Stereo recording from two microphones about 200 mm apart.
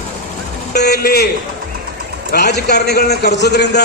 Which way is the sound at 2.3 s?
55° left (ahead or behind).